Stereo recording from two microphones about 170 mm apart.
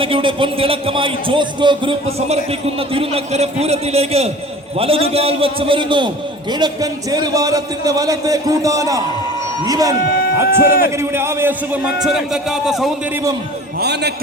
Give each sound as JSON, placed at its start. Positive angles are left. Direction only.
{"t": 0.0, "sound": "a man's voice", "side_deg": -30}
{"t": 10.0, "sound": "a sound", "side_deg": 65}
{"t": 10.7, "sound": "a man's voice", "side_deg": 60}
{"t": 10.9, "sound": "a man's voice", "side_deg": -15}
{"t": 13.7, "sound": "a man's voice", "side_deg": -75}